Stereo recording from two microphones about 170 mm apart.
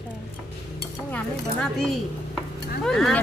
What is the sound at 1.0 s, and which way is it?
A woman's voice, 5° left (ahead or behind).